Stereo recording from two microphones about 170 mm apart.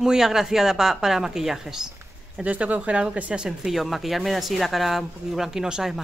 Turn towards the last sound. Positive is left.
turn(degrees=-5)  # may be behind; listen again after turning